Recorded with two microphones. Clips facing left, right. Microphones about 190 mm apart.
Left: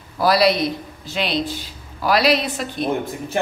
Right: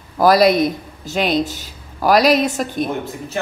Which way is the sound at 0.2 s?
45° right (ahead or behind).